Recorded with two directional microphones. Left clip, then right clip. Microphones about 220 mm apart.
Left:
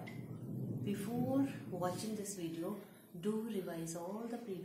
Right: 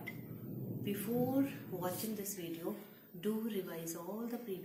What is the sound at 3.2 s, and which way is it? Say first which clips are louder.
Speech: right 1 dB; 10° left (ahead or behind).